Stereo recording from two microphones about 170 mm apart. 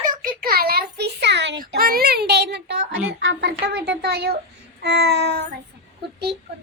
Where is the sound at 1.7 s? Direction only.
60° right (ahead or behind).